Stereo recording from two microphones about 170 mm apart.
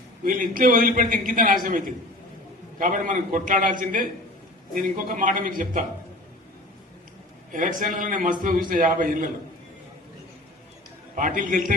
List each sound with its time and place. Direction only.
0.3 s a man's voice: 55° right (ahead or behind)
7.5 s a man's voice: 50° right (ahead or behind)
11.1 s a man's voice: 50° right (ahead or behind)